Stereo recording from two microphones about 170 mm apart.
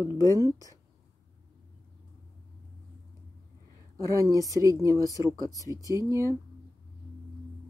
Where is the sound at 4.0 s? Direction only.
20° right (ahead or behind).